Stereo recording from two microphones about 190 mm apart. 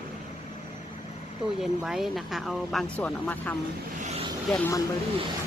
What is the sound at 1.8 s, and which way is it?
Speech, centre (ahead or behind).